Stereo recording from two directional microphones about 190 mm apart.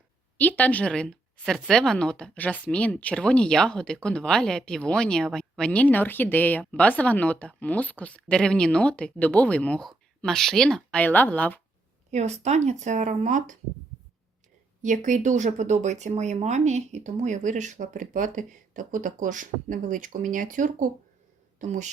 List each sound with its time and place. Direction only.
0.3 s a woman's voice: 10° left (ahead or behind)
12.1 s speech: 35° right (ahead or behind)
14.8 s speech: 40° right (ahead or behind)